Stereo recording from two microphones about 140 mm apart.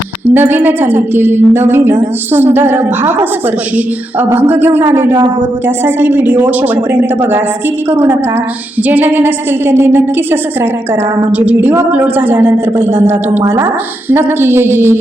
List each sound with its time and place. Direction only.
0.3 s a woman's voice: 15° right (ahead or behind)
4.3 s a woman's voice: 15° right (ahead or behind)
11.3 s a woman's voice: 10° right (ahead or behind)